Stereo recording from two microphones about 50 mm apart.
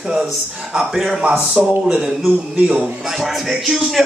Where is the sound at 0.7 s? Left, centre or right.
Centre.